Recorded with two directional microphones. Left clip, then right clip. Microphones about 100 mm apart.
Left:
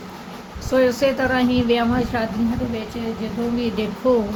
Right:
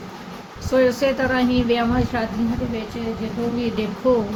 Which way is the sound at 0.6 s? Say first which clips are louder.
Even; 20° left (ahead or behind).